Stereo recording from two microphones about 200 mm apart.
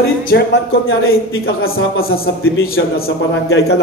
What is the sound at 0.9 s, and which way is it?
Speech, 90° left.